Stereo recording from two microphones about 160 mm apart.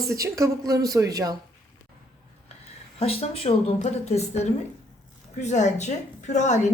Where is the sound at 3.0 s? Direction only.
40° left (ahead or behind).